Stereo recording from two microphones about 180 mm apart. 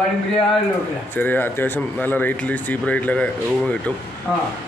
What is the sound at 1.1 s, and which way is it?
Speech, 10° left (ahead or behind).